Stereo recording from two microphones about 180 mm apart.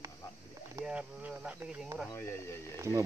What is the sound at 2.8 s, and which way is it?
Speech, 15° right (ahead or behind).